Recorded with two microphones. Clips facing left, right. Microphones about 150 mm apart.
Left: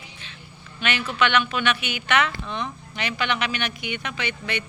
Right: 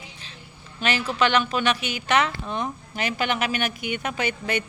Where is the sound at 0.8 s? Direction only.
35° right (ahead or behind).